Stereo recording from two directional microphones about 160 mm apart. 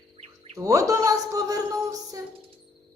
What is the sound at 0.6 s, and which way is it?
A woman's voice, 20° right (ahead or behind).